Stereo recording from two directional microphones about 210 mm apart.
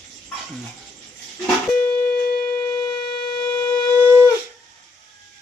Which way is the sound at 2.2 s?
45° left (ahead or behind).